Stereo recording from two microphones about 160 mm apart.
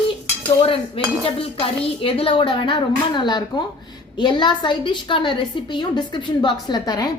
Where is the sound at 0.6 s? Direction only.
35° left (ahead or behind).